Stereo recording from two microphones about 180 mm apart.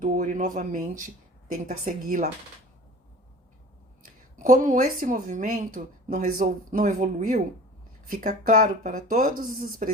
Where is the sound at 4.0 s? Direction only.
45° right (ahead or behind).